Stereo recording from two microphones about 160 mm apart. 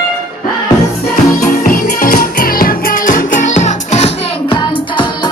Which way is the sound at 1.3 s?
60° left (ahead or behind).